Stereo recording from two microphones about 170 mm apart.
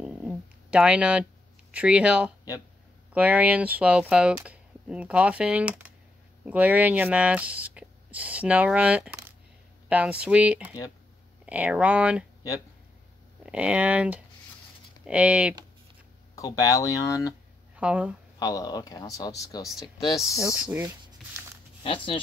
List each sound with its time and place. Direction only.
0.0 s a sound: 5° right (ahead or behind)
1.7 s speech: 5° right (ahead or behind)
13.5 s speech: 5° right (ahead or behind)
16.3 s speech: 20° left (ahead or behind)
17.7 s speech: 5° right (ahead or behind)
18.4 s speech: 20° left (ahead or behind)
20.3 s speech: 5° right (ahead or behind)
21.2 s a sound: centre (ahead or behind)
21.8 s speech: 30° left (ahead or behind)